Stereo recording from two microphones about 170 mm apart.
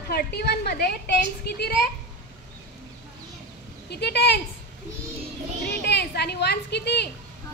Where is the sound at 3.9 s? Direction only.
75° left (ahead or behind).